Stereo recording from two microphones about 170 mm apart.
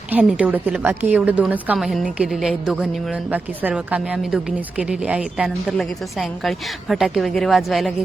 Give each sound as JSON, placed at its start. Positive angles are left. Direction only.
{"t": 0.1, "sound": "a woman's voice", "side_deg": -5}